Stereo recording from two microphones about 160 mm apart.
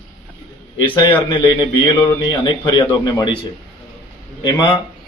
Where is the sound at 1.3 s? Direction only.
30° left (ahead or behind).